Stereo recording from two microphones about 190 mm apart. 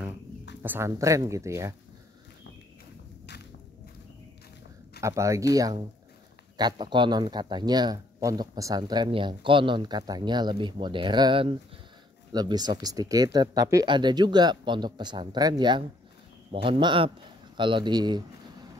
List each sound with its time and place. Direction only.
0.6 s speech: 10° right (ahead or behind)
5.0 s speech: 15° right (ahead or behind)